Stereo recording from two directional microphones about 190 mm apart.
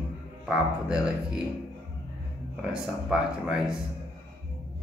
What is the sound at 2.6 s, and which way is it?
Speech, 5° right (ahead or behind).